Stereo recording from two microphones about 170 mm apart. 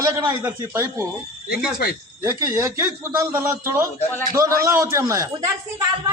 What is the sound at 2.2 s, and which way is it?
A man's voice, 15° right (ahead or behind).